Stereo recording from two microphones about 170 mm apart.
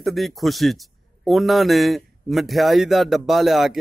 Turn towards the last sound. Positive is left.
turn(degrees=0)  # may be behind; listen again after turning